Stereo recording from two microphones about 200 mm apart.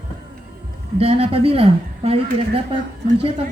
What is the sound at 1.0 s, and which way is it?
Speech, 30° right (ahead or behind).